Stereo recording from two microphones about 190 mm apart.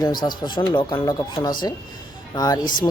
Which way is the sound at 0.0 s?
20° left (ahead or behind).